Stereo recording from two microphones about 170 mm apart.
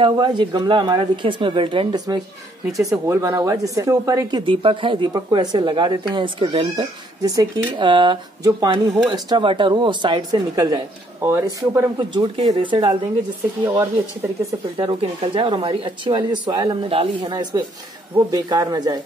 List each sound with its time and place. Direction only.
0.0 s speech: 30° right (ahead or behind)
4.5 s speech: 30° right (ahead or behind)
12.4 s speech: 25° right (ahead or behind)
14.5 s speech: 30° right (ahead or behind)